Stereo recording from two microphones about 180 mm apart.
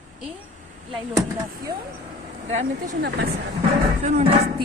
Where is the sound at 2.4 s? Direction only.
45° right (ahead or behind).